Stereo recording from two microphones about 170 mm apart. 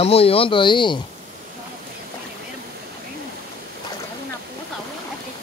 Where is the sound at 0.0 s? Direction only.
35° left (ahead or behind).